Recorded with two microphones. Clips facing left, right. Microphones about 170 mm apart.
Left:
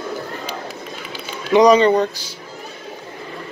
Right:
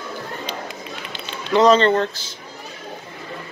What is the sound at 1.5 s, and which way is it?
Speech, 15° left (ahead or behind).